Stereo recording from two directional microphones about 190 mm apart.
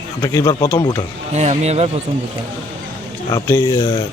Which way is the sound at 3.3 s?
15° left (ahead or behind).